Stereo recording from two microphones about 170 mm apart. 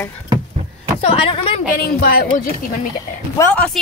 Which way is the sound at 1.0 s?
35° left (ahead or behind).